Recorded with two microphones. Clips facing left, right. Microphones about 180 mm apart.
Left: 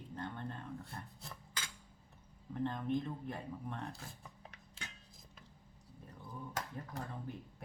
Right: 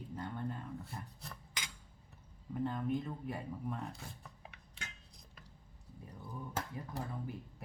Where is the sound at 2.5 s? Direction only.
5° right (ahead or behind).